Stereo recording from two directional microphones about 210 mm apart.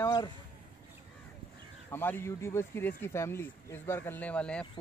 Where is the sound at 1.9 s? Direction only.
10° left (ahead or behind).